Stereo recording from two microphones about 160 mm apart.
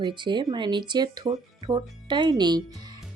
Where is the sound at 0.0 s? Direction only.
30° right (ahead or behind).